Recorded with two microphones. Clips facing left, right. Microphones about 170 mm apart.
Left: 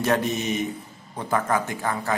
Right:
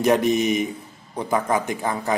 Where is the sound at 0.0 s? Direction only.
15° right (ahead or behind).